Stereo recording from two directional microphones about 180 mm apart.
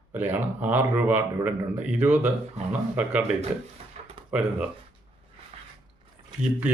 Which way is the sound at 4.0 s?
35° right (ahead or behind).